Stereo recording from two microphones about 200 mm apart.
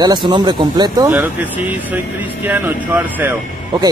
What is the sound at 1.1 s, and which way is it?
Speech, 10° right (ahead or behind).